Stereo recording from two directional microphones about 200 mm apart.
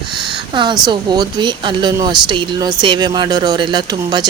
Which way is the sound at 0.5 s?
25° right (ahead or behind).